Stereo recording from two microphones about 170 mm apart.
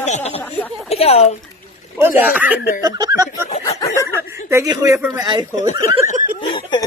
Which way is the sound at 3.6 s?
20° left (ahead or behind).